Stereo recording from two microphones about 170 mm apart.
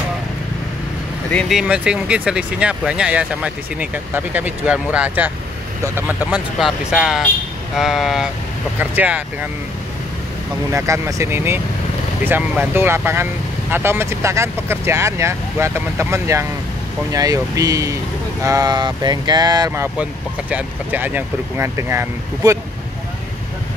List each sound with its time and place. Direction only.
1.3 s speech: centre (ahead or behind)
10.7 s speech: 20° right (ahead or behind)